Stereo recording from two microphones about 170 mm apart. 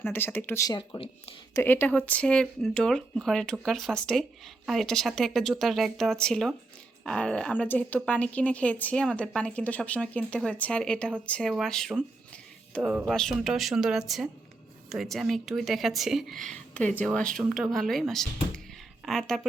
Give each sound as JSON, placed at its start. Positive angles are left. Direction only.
{"t": 0.0, "sound": "speech", "side_deg": 10}
{"t": 0.8, "sound": "speech", "side_deg": 35}
{"t": 1.5, "sound": "speech", "side_deg": 10}
{"t": 19.0, "sound": "a sound", "side_deg": 0}